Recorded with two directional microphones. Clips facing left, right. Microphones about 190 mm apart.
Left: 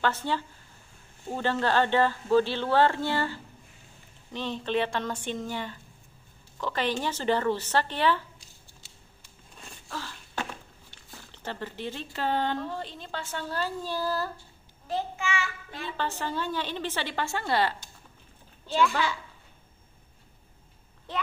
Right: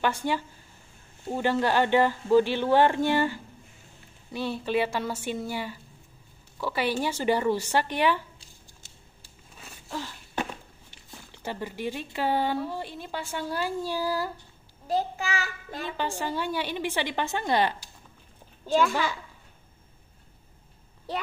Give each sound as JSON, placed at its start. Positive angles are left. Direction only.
{"t": 0.0, "sound": "a woman's voice", "side_deg": -10}
{"t": 9.8, "sound": "a sound", "side_deg": -15}
{"t": 11.3, "sound": "a woman's voice", "side_deg": -10}
{"t": 14.9, "sound": "child singing", "side_deg": -40}
{"t": 16.0, "sound": "a woman's voice", "side_deg": -10}
{"t": 18.7, "sound": "a child's voice", "side_deg": -45}
{"t": 21.1, "sound": "a child's voice", "side_deg": -35}